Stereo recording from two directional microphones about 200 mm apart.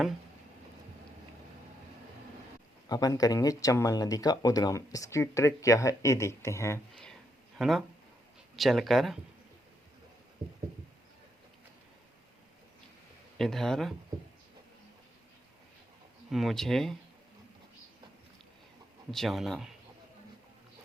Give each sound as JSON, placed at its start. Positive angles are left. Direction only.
{"t": 2.9, "sound": "speech", "side_deg": 20}
{"t": 7.6, "sound": "speech", "side_deg": 0}
{"t": 13.3, "sound": "speech", "side_deg": 0}
{"t": 16.3, "sound": "speech", "side_deg": 0}
{"t": 19.1, "sound": "speech", "side_deg": 0}